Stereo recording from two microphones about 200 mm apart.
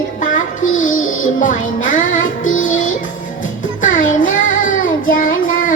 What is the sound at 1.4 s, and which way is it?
Music, 40° left (ahead or behind).